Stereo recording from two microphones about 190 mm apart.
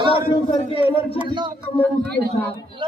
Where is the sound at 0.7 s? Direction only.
30° left (ahead or behind).